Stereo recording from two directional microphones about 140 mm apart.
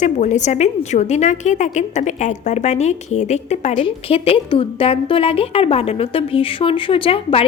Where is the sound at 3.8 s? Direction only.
40° left (ahead or behind).